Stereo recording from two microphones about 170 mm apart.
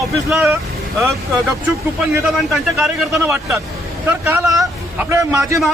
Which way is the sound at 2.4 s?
Centre (ahead or behind).